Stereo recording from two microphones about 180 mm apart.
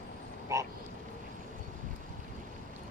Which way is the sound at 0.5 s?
15° right (ahead or behind).